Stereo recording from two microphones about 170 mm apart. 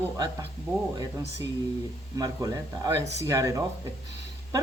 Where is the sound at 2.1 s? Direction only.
20° right (ahead or behind).